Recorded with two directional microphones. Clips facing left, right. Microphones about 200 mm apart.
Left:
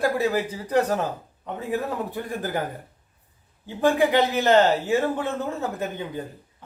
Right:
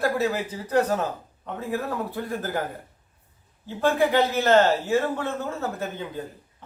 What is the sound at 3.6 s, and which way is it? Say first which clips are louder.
A man's voice: left 2 dB; 15° left (ahead or behind).